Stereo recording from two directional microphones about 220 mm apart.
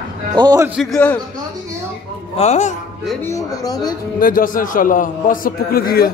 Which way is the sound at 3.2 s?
15° left (ahead or behind).